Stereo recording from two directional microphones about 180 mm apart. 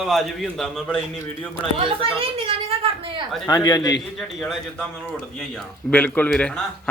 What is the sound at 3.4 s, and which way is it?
Speech, 25° left (ahead or behind).